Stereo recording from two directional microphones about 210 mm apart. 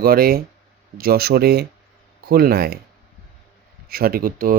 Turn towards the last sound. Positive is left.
turn(degrees=-40)  # may be behind; listen again after turning